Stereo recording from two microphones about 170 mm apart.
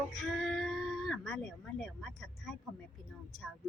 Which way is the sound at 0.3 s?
Centre (ahead or behind).